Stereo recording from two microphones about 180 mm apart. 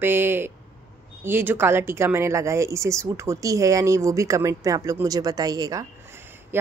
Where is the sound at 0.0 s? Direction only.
10° right (ahead or behind).